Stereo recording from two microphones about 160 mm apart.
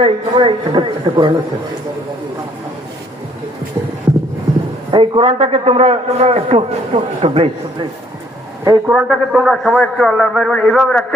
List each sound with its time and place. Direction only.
0.0 s a man's voice: 30° right (ahead or behind)
4.9 s a man's voice: 30° right (ahead or behind)
8.6 s a man's voice: 15° right (ahead or behind); by 11.0 s 5° left (ahead or behind)